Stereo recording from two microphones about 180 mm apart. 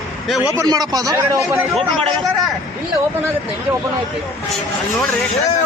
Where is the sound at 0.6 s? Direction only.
20° right (ahead or behind).